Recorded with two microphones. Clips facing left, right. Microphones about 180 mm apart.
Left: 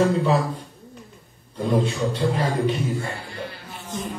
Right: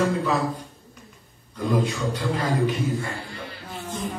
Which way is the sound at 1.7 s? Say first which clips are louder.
Left 2 dB; 30° left (ahead or behind).